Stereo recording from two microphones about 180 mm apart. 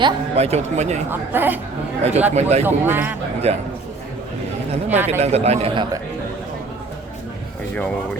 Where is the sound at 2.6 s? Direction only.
10° right (ahead or behind).